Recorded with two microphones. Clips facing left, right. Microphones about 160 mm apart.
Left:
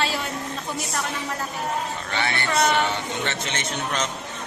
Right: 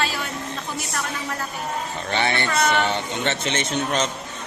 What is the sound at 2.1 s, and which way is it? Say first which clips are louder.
A man's voice: right 2 dB; 25° right (ahead or behind).